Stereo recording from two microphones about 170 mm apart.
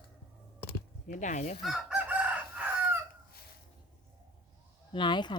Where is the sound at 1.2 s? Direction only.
45° left (ahead or behind).